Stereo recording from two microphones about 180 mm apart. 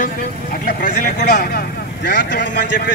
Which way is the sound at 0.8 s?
50° left (ahead or behind).